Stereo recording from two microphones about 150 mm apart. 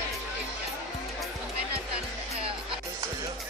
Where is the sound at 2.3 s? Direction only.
40° right (ahead or behind).